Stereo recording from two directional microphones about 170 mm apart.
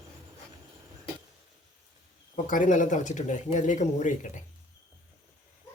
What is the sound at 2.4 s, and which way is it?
Speech, 50° left (ahead or behind).